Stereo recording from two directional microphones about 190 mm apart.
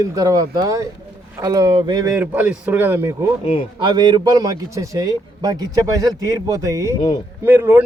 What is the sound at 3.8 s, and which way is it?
A man's voice, 25° right (ahead or behind).